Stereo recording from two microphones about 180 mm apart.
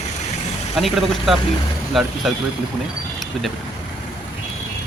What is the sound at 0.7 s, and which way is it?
A man's voice, centre (ahead or behind).